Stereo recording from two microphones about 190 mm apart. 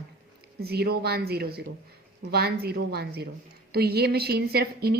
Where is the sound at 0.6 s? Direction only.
55° right (ahead or behind).